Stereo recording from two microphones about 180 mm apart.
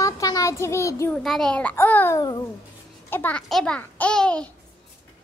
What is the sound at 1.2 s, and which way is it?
A child's voice, centre (ahead or behind).